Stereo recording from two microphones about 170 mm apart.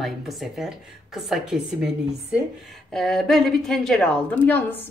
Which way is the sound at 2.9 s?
Centre (ahead or behind).